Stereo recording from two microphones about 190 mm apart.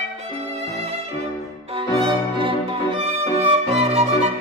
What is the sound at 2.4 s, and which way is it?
Music, 30° right (ahead or behind).